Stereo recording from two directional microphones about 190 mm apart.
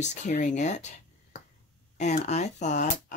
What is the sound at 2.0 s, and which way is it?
Speech, 40° left (ahead or behind).